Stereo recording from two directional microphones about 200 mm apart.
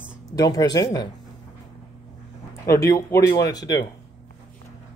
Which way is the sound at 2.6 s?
15° left (ahead or behind).